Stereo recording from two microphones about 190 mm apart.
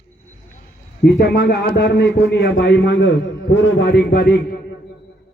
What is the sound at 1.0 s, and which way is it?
A man's voice, 55° left (ahead or behind).